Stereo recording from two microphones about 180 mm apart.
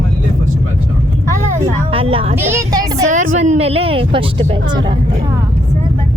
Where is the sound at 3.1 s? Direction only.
45° right (ahead or behind); by 4.8 s 25° right (ahead or behind).